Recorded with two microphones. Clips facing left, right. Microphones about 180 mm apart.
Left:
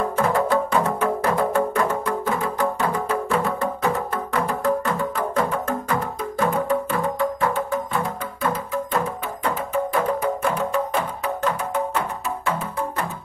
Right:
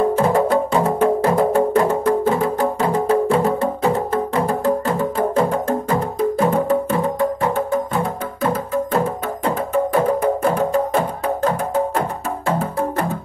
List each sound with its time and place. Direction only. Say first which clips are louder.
0.0 s music: right 5 dB; 30° right (ahead or behind)
8.5 s music: right 5 dB; 30° right (ahead or behind)
10.2 s music: right 5 dB; 45° right (ahead or behind)